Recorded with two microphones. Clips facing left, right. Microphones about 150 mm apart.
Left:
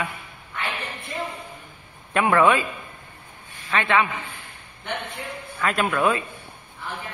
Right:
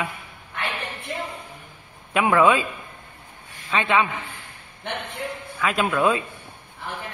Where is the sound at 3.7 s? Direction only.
15° right (ahead or behind).